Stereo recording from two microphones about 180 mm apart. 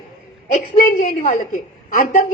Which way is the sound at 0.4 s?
45° left (ahead or behind).